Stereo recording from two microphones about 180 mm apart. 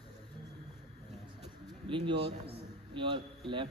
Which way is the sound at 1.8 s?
30° right (ahead or behind).